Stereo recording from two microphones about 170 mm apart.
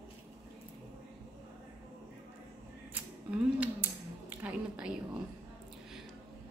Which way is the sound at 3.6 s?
10° right (ahead or behind).